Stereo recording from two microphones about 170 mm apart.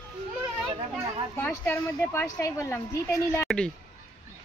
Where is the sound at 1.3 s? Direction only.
10° left (ahead or behind).